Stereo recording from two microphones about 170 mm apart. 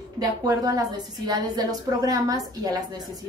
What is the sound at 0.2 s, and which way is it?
A woman's voice, 20° right (ahead or behind).